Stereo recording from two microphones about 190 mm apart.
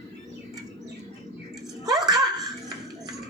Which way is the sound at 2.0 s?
20° right (ahead or behind).